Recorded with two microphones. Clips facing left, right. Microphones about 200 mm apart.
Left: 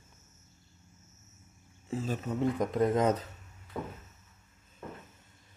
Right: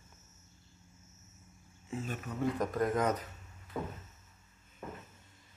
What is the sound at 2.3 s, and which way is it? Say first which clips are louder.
Speech: left 3 dB; 20° left (ahead or behind).